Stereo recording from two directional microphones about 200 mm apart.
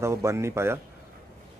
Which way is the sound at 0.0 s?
15° right (ahead or behind).